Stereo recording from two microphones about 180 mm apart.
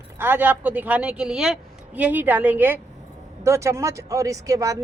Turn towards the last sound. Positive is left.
turn(degrees=-20)  # may be behind; listen again after turning